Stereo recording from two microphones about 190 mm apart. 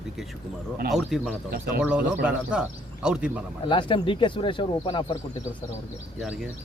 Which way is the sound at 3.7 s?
25° left (ahead or behind).